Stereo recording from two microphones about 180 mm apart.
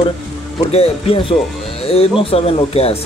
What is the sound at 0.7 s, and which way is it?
Speech, 35° left (ahead or behind).